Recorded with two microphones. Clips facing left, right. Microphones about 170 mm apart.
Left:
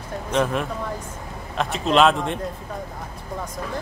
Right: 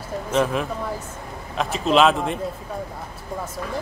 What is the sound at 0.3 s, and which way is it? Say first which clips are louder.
Speech: right 1 dB; centre (ahead or behind).